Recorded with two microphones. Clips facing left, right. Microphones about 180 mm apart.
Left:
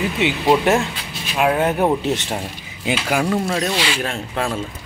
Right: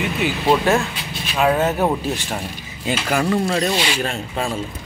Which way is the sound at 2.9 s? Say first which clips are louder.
Even; 5° left (ahead or behind).